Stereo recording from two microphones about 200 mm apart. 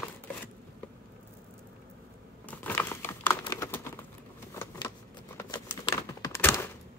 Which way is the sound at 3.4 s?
15° left (ahead or behind).